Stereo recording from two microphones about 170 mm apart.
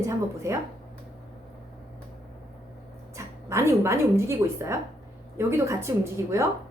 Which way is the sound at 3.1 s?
15° right (ahead or behind).